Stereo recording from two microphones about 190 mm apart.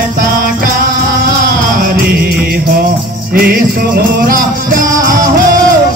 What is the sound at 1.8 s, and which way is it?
Music, 55° right (ahead or behind).